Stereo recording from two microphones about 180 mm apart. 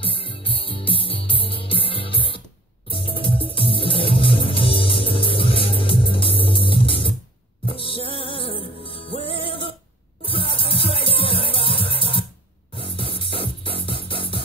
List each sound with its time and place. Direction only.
0.0 s music: 30° left (ahead or behind)